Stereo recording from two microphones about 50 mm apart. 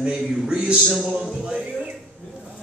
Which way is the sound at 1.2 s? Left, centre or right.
Centre.